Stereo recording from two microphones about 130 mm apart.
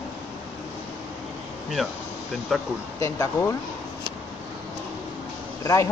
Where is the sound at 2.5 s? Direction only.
Centre (ahead or behind).